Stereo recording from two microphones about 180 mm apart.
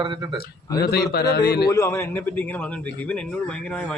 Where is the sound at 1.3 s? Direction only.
65° left (ahead or behind).